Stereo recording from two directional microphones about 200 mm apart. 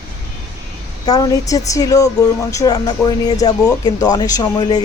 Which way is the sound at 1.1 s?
20° left (ahead or behind).